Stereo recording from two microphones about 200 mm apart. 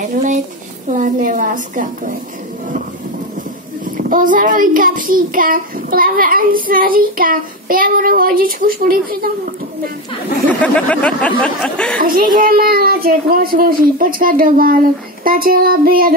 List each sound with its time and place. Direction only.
0.9 s a woman's voice: 40° right (ahead or behind)
3.9 s child singing: 40° right (ahead or behind)
10.6 s speech: 5° left (ahead or behind)
12.0 s child singing: 45° right (ahead or behind)